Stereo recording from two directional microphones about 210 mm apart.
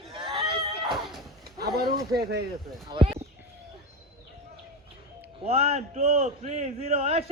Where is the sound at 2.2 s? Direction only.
50° right (ahead or behind).